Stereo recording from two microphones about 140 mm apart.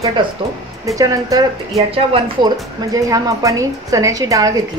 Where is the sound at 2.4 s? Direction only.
25° right (ahead or behind).